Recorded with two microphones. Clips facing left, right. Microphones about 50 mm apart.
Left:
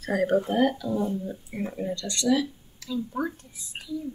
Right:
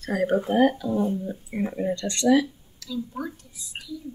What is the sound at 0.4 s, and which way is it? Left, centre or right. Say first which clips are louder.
Speech: right 3 dB; centre.